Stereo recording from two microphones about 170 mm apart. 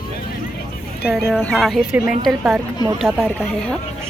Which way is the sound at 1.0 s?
Centre (ahead or behind).